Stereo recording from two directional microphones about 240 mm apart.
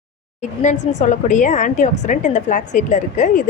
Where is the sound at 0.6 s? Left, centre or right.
Left.